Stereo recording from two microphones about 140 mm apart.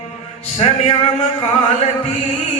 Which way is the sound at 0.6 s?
50° left (ahead or behind).